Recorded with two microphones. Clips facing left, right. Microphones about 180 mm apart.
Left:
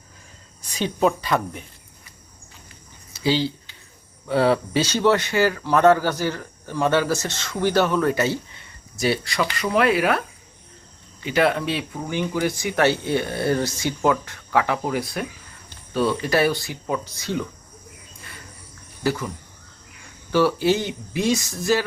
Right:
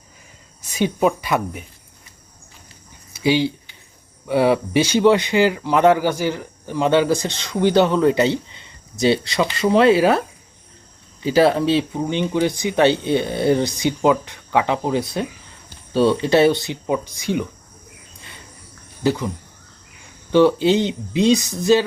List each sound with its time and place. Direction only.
0.8 s speech: 10° right (ahead or behind)
3.1 s a sound: 15° right (ahead or behind)
4.3 s speech: 15° right (ahead or behind)
19.0 s speech: 20° right (ahead or behind)
20.3 s speech: 20° right (ahead or behind)